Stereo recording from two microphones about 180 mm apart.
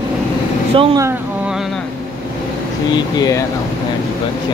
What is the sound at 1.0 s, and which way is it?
Speech, 15° right (ahead or behind).